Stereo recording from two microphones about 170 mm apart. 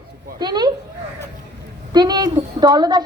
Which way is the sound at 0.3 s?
25° right (ahead or behind).